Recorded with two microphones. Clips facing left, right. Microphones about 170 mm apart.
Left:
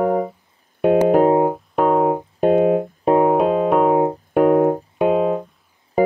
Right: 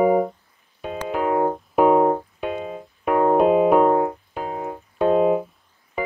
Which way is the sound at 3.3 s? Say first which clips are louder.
Right 1 dB; 5° right (ahead or behind).